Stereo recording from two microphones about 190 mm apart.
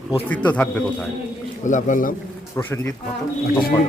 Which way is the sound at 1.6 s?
40° left (ahead or behind).